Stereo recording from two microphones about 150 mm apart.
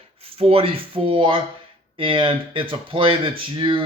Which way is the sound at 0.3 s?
40° right (ahead or behind).